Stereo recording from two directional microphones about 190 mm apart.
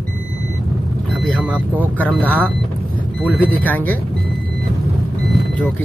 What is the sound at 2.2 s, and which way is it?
Speech, 10° left (ahead or behind).